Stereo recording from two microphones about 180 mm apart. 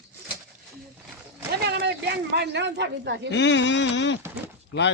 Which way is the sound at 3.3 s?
85° left.